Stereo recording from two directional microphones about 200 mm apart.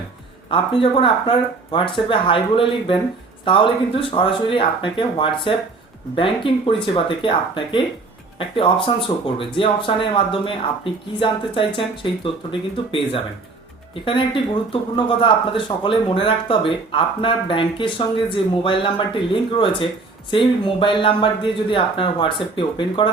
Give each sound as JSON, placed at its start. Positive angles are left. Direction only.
{"t": 0.5, "sound": "speech", "side_deg": 25}